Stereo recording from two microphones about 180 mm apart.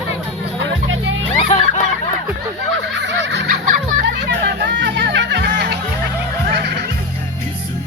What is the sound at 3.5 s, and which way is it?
Music, 50° right (ahead or behind).